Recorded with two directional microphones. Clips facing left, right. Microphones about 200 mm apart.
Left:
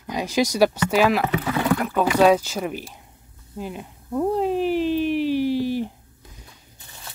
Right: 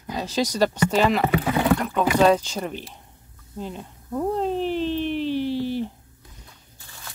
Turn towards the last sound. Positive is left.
turn(degrees=10)  # may be behind; listen again after turning